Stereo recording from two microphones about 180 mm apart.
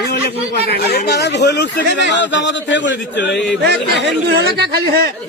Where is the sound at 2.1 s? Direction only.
80° left.